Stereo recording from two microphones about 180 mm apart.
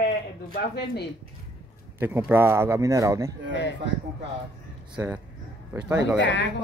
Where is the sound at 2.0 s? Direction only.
10° right (ahead or behind).